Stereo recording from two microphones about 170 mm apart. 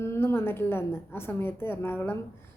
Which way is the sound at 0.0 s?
15° left (ahead or behind).